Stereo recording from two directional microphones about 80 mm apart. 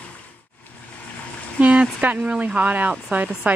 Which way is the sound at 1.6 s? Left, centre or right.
Centre.